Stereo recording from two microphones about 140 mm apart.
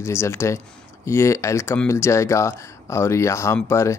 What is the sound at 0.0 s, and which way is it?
Speech, 20° left (ahead or behind).